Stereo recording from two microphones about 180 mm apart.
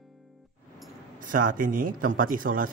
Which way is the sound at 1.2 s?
50° right (ahead or behind).